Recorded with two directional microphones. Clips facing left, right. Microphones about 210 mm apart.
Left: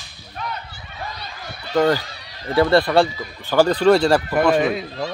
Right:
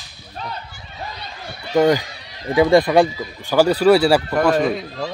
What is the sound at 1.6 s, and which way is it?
Speech, 15° right (ahead or behind).